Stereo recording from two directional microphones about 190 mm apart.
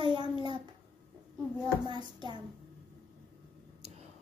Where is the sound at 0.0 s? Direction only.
25° right (ahead or behind).